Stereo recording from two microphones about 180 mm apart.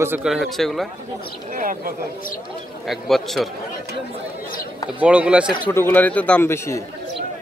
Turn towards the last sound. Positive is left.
turn(degrees=15)  # may be behind; listen again after turning